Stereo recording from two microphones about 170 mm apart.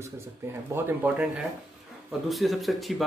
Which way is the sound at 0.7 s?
10° right (ahead or behind).